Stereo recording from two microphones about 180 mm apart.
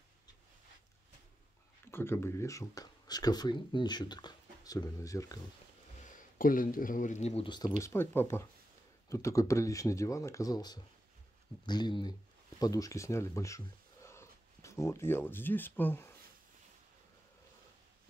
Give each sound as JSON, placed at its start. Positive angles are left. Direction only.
{"t": 1.9, "sound": "speech", "side_deg": 15}
{"t": 6.3, "sound": "speech", "side_deg": 50}
{"t": 7.8, "sound": "speech", "side_deg": 15}